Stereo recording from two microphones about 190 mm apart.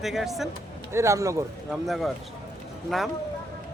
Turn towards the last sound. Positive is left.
turn(degrees=0)  # may be behind; listen again after turning